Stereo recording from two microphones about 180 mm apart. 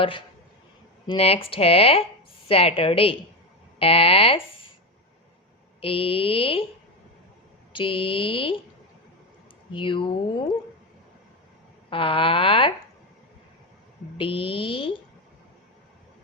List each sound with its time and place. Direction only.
1.0 s speech: 30° left (ahead or behind)
5.8 s speech: 30° left (ahead or behind)
7.7 s speech: 30° left (ahead or behind)
9.7 s speech: 30° left (ahead or behind)
11.9 s speech: 30° left (ahead or behind)
14.2 s speech: 30° left (ahead or behind)